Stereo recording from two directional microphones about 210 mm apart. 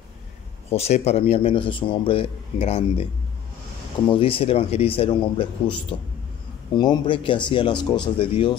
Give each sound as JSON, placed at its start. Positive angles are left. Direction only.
{"t": 0.7, "sound": "speech", "side_deg": 30}
{"t": 4.1, "sound": "speech", "side_deg": 25}